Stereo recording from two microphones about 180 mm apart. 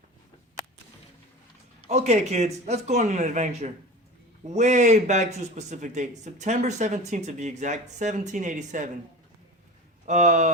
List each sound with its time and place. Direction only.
1.9 s speech: 40° right (ahead or behind)
10.1 s speech: 40° right (ahead or behind)